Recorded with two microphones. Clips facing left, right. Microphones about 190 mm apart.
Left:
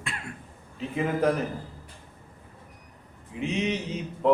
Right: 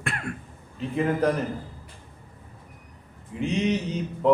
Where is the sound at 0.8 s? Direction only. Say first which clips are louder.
Right 2 dB; centre (ahead or behind).